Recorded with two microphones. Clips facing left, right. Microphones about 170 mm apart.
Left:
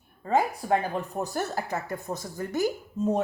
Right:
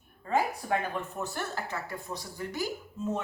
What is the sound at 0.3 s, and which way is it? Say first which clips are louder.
A woman's voice: left 4 dB; 35° left (ahead or behind).